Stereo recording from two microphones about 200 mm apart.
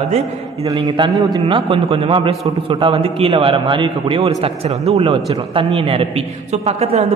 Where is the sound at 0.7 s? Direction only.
20° right (ahead or behind).